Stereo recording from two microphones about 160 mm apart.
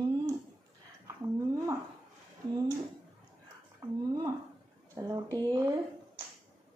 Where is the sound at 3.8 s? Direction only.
25° right (ahead or behind).